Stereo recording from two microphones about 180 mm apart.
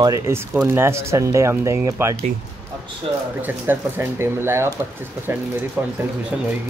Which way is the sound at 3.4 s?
10° right (ahead or behind).